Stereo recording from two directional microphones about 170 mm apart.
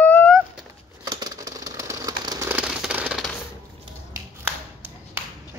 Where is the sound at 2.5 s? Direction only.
10° right (ahead or behind).